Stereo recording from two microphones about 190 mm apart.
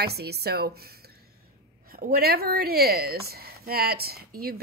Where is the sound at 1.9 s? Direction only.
55° right (ahead or behind).